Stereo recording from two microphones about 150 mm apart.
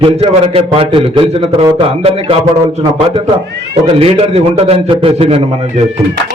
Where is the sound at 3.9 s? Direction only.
40° right (ahead or behind).